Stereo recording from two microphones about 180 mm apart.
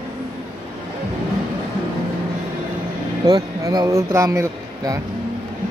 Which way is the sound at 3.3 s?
20° right (ahead or behind).